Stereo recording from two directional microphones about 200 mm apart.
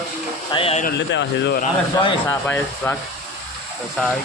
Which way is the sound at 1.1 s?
65° left (ahead or behind).